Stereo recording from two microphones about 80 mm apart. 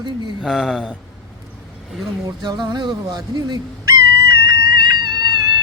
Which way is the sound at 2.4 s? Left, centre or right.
Right.